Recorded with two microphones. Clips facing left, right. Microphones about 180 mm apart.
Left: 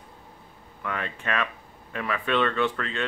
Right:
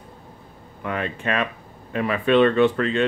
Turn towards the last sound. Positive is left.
turn(degrees=-20)  # may be behind; listen again after turning